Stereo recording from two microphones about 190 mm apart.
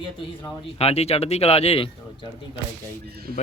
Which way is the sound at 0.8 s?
35° left (ahead or behind).